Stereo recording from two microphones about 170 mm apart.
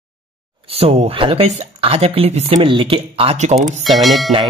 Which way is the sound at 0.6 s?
35° right (ahead or behind).